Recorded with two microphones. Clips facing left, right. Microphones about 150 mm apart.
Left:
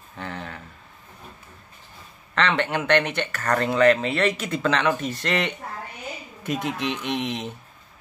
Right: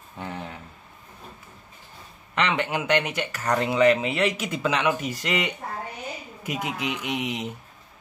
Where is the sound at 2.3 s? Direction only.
15° right (ahead or behind).